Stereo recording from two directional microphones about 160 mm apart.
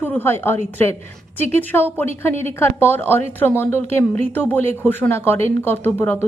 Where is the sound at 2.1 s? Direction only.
40° right (ahead or behind).